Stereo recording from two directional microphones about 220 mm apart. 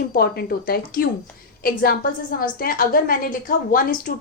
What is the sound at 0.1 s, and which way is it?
A woman's voice, 40° left (ahead or behind).